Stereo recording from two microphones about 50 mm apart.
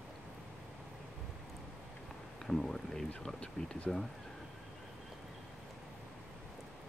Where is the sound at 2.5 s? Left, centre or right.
Centre.